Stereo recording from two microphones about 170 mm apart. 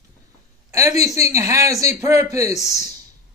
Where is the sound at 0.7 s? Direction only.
20° right (ahead or behind).